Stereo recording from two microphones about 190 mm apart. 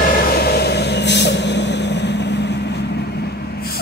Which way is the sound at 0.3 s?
55° left (ahead or behind).